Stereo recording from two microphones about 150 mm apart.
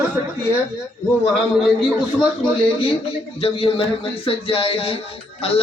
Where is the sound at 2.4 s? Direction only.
40° left (ahead or behind).